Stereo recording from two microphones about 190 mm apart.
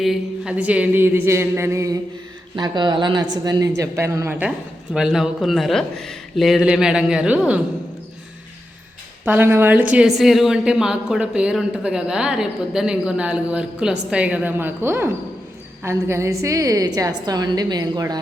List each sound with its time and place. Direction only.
0.0 s a woman's voice: 5° right (ahead or behind)
9.2 s a woman's voice: 10° right (ahead or behind)